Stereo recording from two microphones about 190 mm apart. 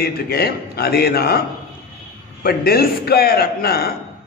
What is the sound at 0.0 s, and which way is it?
A man's voice, 55° left (ahead or behind).